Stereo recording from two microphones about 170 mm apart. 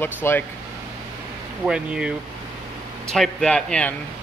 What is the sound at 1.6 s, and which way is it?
Speech, 5° right (ahead or behind).